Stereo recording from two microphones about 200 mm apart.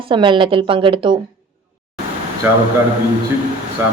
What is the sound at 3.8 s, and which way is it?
Speech, 10° right (ahead or behind).